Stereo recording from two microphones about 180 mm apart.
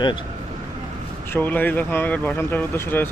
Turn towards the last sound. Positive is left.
turn(degrees=10)  # may be behind; listen again after turning